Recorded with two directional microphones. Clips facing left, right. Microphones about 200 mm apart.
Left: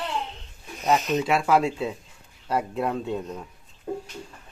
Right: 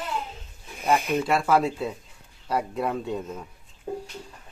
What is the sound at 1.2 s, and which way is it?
Speech, 5° left (ahead or behind).